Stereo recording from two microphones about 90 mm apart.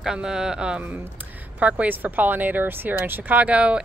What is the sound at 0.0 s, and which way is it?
Speech, 10° right (ahead or behind).